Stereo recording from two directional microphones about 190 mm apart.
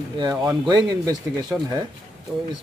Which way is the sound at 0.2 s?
20° right (ahead or behind).